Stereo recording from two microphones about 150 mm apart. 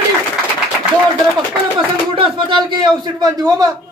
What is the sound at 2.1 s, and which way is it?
A man's voice, 35° right (ahead or behind).